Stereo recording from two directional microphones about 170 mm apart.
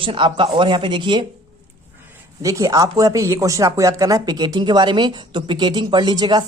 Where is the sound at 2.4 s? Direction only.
20° right (ahead or behind).